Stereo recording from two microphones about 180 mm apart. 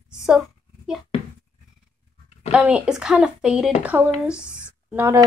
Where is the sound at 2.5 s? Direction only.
5° right (ahead or behind).